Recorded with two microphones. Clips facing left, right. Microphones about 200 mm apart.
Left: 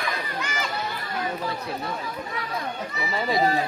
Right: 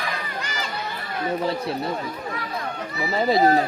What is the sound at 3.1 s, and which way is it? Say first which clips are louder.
Speech: right 5 dB; 40° right (ahead or behind).